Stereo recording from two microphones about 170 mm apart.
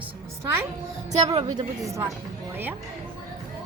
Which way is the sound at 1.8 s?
15° right (ahead or behind).